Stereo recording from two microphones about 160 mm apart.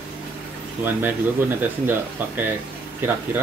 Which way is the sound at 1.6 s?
15° right (ahead or behind).